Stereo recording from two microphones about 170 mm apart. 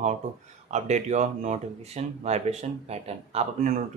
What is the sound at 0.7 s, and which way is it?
Speech, 45° right (ahead or behind).